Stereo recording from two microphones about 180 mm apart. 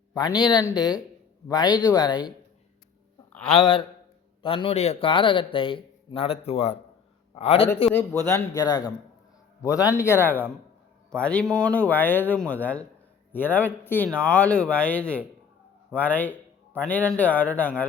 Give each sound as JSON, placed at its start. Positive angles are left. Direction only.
{"t": 0.1, "sound": "a man's voice", "side_deg": 20}
{"t": 3.5, "sound": "a man's voice", "side_deg": 30}
{"t": 7.9, "sound": "speech", "side_deg": 15}